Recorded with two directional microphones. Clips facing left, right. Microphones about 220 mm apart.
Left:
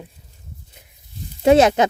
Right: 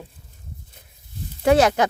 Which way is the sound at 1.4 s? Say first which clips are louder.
Left 3 dB; 20° left (ahead or behind).